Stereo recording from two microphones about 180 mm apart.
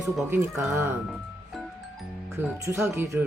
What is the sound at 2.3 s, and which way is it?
Speech, 15° right (ahead or behind).